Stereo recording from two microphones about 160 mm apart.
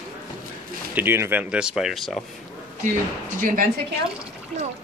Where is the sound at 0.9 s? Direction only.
15° right (ahead or behind); by 2.2 s centre (ahead or behind).